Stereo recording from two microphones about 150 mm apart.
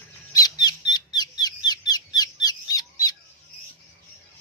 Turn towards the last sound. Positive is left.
turn(degrees=25)  # may be behind; listen again after turning